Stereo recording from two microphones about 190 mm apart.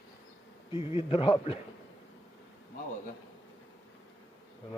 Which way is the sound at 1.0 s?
30° left (ahead or behind).